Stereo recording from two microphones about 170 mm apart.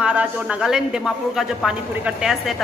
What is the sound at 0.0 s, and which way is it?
A man's voice, 5° right (ahead or behind).